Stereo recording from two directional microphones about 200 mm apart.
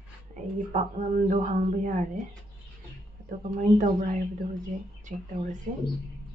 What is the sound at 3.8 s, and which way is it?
Speech, 35° right (ahead or behind).